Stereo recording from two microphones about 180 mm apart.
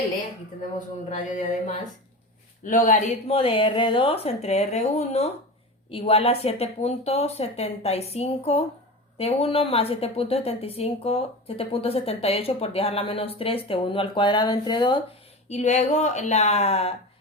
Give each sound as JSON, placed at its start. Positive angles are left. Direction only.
{"t": 1.1, "sound": "a sound", "side_deg": 45}
{"t": 2.6, "sound": "a woman's voice", "side_deg": 45}
{"t": 15.4, "sound": "a woman's voice", "side_deg": 40}